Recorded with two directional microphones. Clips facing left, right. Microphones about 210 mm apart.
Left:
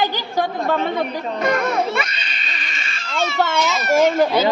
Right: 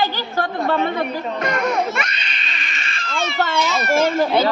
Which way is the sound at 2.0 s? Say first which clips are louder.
Left 1 dB; centre (ahead or behind).